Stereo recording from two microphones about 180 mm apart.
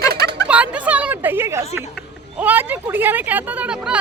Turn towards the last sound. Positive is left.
turn(degrees=-5)  # may be behind; listen again after turning